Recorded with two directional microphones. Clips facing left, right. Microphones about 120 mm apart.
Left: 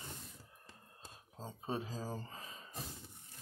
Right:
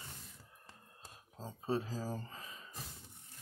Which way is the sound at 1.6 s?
20° left (ahead or behind).